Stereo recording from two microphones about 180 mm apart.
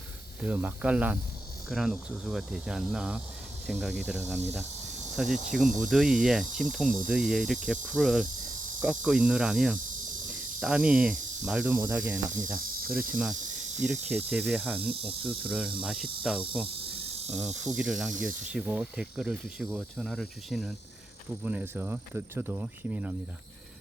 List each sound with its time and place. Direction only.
0.4 s speech: 10° right (ahead or behind)
6.8 s speech: 50° right (ahead or behind)
7.1 s speech: centre (ahead or behind)